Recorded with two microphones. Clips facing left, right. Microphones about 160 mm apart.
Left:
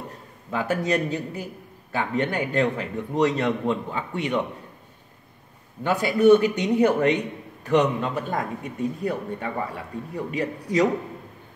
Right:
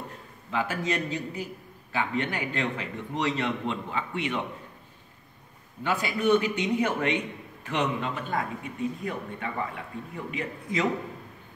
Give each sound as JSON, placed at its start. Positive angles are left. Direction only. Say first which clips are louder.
{"t": 0.5, "sound": "a man's voice", "louder": "left 5 dB", "side_deg": 40}
{"t": 5.9, "sound": "a man's voice", "louder": "left 8 dB", "side_deg": 40}